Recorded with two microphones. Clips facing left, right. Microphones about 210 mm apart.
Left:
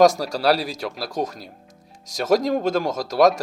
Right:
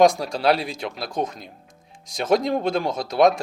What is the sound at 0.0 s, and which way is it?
Speech, 40° left (ahead or behind).